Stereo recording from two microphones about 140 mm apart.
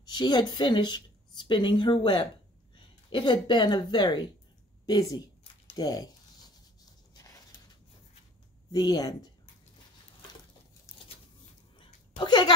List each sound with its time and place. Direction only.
0.0 s a woman's voice: 30° left (ahead or behind)
8.7 s speech: 25° left (ahead or behind)
12.2 s speech: 30° left (ahead or behind)